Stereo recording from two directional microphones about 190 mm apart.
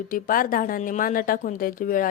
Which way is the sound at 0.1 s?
45° left (ahead or behind).